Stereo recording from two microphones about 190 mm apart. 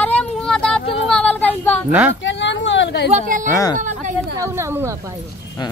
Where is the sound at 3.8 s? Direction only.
40° right (ahead or behind).